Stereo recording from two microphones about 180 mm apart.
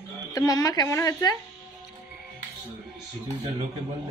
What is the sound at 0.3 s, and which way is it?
A woman's voice, 20° left (ahead or behind).